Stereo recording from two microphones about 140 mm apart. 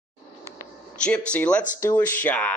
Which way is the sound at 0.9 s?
10° left (ahead or behind).